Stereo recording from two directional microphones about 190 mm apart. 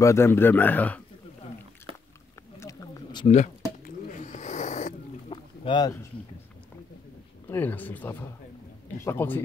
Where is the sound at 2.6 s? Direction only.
20° left (ahead or behind).